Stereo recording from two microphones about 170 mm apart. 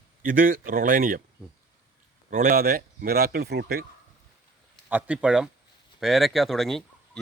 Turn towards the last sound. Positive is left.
turn(degrees=0)  # may be behind; listen again after turning